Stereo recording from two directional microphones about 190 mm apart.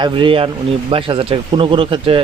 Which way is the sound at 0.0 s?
25° right (ahead or behind).